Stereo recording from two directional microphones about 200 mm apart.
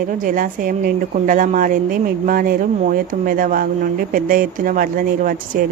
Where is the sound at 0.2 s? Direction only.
45° right (ahead or behind).